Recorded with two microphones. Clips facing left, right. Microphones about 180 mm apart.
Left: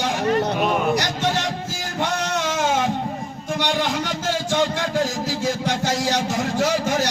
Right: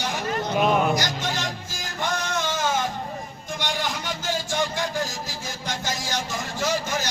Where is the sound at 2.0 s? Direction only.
75° left (ahead or behind).